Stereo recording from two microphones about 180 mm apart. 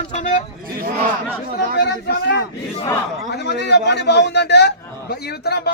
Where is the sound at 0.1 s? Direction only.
45° left (ahead or behind).